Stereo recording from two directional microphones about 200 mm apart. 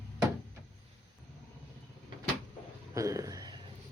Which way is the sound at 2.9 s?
15° right (ahead or behind).